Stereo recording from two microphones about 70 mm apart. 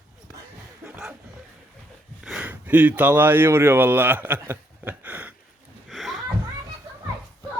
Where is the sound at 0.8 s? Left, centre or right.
Centre.